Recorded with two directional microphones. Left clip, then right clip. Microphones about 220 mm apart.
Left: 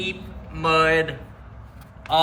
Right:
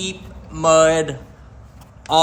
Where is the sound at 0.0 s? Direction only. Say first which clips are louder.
Right 1 dB; 15° right (ahead or behind).